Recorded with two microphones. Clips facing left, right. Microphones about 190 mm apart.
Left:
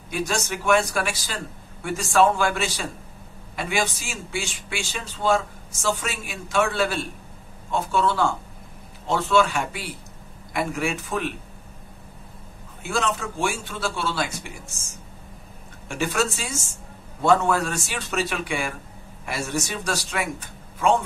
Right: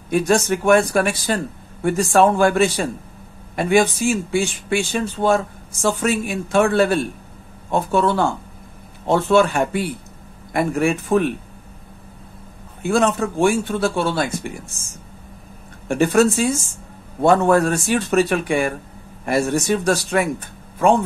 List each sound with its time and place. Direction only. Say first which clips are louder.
0.1 s speech: right 10 dB; 55° right (ahead or behind)
12.8 s speech: right 8 dB; 55° right (ahead or behind)
15.9 s speech: right 10 dB; 55° right (ahead or behind)